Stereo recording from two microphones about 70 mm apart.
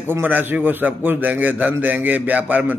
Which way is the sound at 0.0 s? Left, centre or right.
Right.